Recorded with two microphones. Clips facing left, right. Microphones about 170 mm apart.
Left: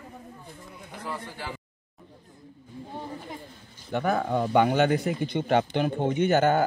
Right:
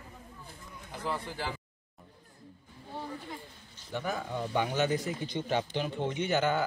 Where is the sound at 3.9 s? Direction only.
65° left (ahead or behind).